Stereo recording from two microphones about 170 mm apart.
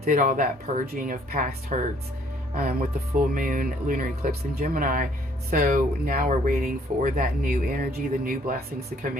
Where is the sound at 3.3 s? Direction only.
55° right (ahead or behind).